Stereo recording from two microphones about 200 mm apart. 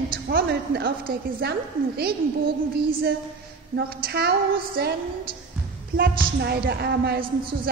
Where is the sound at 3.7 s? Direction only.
50° right (ahead or behind).